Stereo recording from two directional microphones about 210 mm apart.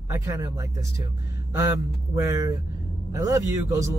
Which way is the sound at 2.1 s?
15° right (ahead or behind).